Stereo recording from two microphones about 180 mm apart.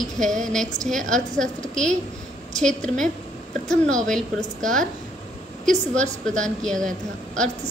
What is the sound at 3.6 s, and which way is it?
A woman's voice, 5° left (ahead or behind).